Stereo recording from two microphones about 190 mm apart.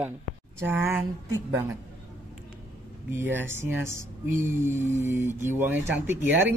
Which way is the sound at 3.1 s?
10° right (ahead or behind).